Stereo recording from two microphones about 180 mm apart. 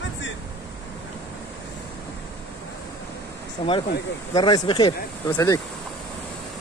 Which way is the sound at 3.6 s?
35° left (ahead or behind).